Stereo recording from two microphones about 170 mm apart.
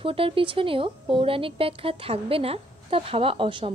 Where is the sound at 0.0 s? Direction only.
30° right (ahead or behind).